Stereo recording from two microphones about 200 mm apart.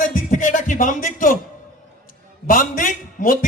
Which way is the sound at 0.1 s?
40° left (ahead or behind).